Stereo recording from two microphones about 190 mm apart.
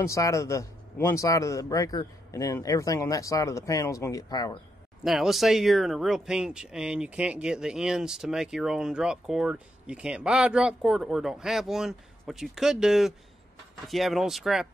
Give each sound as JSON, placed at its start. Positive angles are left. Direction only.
{"t": 0.0, "sound": "a man's voice", "side_deg": 15}
{"t": 5.0, "sound": "speech", "side_deg": 0}